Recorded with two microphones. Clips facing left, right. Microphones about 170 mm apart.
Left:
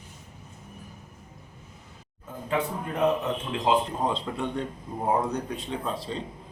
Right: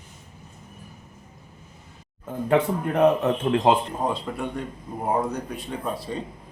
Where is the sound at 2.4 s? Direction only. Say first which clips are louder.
Right 7 dB; 60° right (ahead or behind).